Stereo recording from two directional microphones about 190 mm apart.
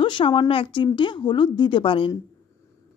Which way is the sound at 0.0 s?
25° left (ahead or behind).